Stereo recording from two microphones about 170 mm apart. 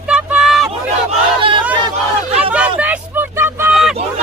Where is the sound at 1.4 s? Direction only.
30° right (ahead or behind).